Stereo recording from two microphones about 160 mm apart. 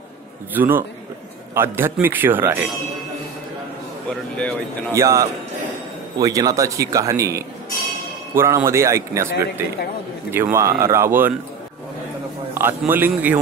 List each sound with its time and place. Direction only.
0.6 s a man's voice: 15° right (ahead or behind)
4.1 s speech: 5° left (ahead or behind)
4.9 s a man's voice: 20° right (ahead or behind)
10.3 s a man's voice: 15° right (ahead or behind)
12.5 s a man's voice: 15° right (ahead or behind)